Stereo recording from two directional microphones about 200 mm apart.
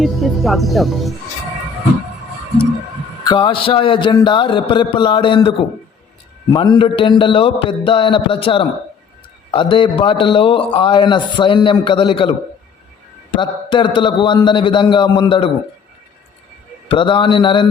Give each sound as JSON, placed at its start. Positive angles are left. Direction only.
{"t": 0.0, "sound": "speech", "side_deg": 0}
{"t": 3.2, "sound": "a man's voice", "side_deg": 25}
{"t": 13.3, "sound": "a man's voice", "side_deg": 25}
{"t": 16.9, "sound": "a man's voice", "side_deg": 25}